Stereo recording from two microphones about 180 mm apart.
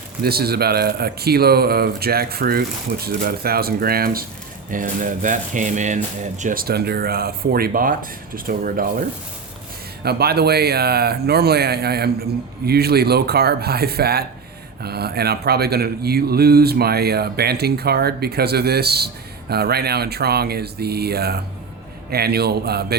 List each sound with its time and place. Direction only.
0.2 s speech: 60° right (ahead or behind)